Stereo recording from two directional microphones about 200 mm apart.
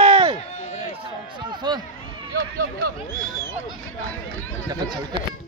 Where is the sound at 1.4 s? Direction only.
20° right (ahead or behind).